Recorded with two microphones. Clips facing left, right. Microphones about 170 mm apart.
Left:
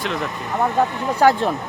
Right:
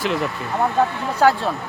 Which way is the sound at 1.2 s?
15° left (ahead or behind).